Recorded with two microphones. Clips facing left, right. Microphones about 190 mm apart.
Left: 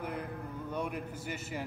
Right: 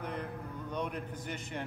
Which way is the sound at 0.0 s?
5° left (ahead or behind).